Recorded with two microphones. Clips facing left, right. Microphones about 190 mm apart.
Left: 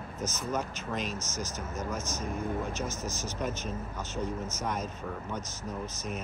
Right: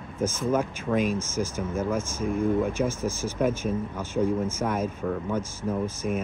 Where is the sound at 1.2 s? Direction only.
10° right (ahead or behind).